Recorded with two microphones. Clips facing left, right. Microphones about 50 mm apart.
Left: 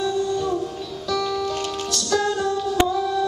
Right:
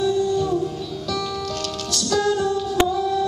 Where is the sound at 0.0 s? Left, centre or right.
Centre.